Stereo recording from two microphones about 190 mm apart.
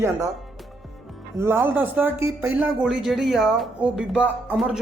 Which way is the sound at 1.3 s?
10° right (ahead or behind).